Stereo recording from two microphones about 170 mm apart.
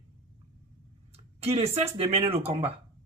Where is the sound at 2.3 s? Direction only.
35° right (ahead or behind).